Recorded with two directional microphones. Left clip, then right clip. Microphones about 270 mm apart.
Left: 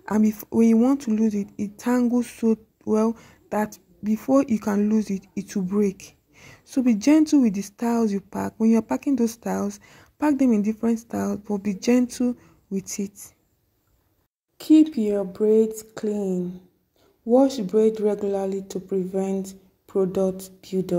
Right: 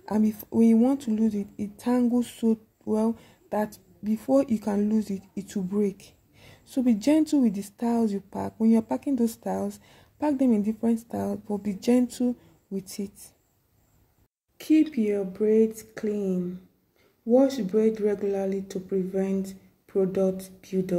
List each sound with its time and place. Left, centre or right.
0.0 s speech: centre
14.6 s speech: centre